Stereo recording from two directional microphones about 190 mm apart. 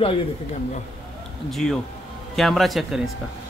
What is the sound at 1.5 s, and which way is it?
Speech, 5° left (ahead or behind).